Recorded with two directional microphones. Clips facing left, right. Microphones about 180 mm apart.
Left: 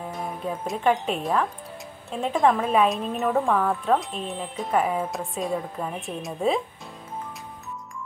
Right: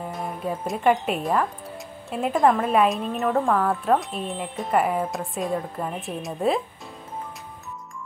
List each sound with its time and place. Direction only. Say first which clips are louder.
0.0 s speech: right 1 dB; centre (ahead or behind)